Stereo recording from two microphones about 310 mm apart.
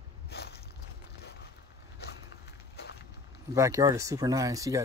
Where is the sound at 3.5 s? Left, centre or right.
Centre.